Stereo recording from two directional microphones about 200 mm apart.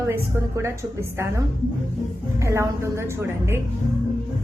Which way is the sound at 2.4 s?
15° right (ahead or behind).